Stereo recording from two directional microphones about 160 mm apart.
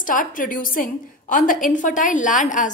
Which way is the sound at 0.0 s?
55° left (ahead or behind).